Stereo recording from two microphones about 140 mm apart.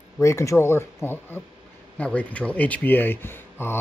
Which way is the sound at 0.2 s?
20° left (ahead or behind).